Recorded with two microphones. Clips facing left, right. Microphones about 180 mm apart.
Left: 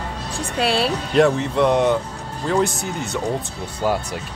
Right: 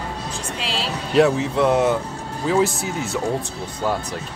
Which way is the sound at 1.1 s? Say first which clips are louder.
Right 1 dB; centre (ahead or behind).